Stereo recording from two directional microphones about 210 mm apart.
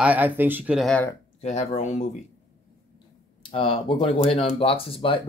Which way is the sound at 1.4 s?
30° left (ahead or behind).